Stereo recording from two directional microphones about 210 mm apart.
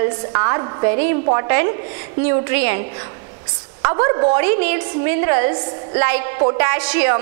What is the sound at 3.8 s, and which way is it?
Speech, 25° right (ahead or behind).